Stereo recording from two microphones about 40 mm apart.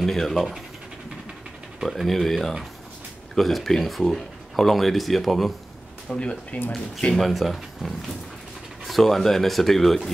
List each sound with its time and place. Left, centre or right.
0.0 s speech: centre
1.9 s speech: centre
6.0 s speech: left
6.5 s speech: left
7.1 s speech: centre